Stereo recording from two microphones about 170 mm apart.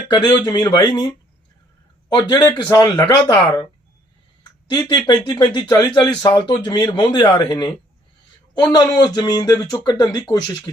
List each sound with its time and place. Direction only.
0.1 s speech: 25° left (ahead or behind)
2.1 s speech: 20° left (ahead or behind)
4.9 s speech: 25° left (ahead or behind)